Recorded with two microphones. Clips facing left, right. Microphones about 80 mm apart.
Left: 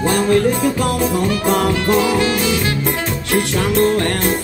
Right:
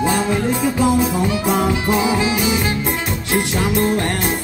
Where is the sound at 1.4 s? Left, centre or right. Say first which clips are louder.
Left 2 dB; centre.